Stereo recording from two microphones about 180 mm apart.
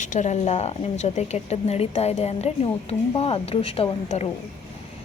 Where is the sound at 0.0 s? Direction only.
40° left (ahead or behind).